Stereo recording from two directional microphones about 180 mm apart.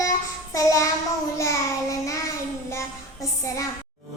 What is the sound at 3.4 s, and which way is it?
Speech, 15° left (ahead or behind).